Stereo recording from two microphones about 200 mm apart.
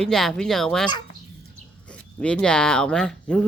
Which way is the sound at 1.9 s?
5° left (ahead or behind).